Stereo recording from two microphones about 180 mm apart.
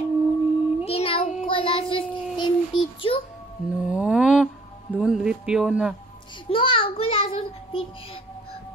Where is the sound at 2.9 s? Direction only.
30° left (ahead or behind).